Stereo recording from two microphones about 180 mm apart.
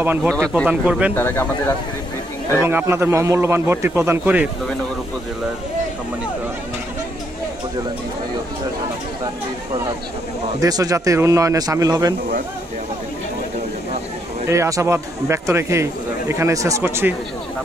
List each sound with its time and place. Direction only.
0.0 s a man's voice: 10° right (ahead or behind)
0.3 s speech: 5° left (ahead or behind)
0.7 s a man's voice: 5° right (ahead or behind)
1.1 s speech: 10° left (ahead or behind)
2.6 s a man's voice: 15° right (ahead or behind)
10.6 s speech: 20° right (ahead or behind)
14.5 s a man's voice: 15° right (ahead or behind)